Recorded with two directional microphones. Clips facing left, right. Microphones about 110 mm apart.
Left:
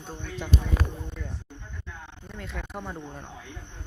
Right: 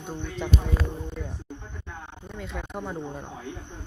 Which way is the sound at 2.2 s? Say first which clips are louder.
Right 2 dB; centre (ahead or behind).